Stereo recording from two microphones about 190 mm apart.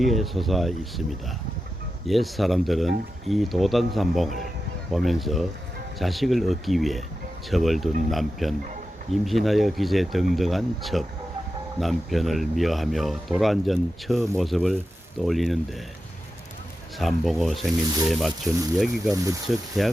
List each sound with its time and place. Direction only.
0.0 s speech: centre (ahead or behind)
2.0 s speech: centre (ahead or behind)
17.0 s speech: centre (ahead or behind)
19.1 s speech: 15° right (ahead or behind)
19.5 s speech: centre (ahead or behind)